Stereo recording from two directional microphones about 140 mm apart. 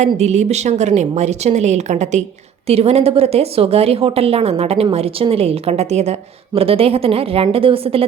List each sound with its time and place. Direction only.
0.0 s a woman's voice: 55° right (ahead or behind)